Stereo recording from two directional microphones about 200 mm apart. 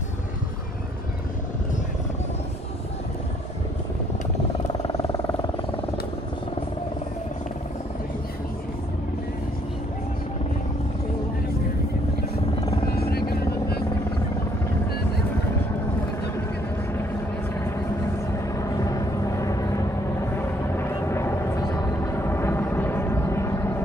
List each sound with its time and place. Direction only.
4.8 s vehicle: 15° left (ahead or behind)
12.5 s vehicle: 25° left (ahead or behind)
13.3 s vehicle: 50° left (ahead or behind)
18.5 s vehicle: 15° left (ahead or behind)